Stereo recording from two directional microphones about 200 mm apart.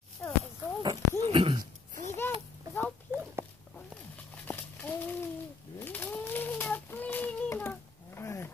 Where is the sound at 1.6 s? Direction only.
40° right (ahead or behind).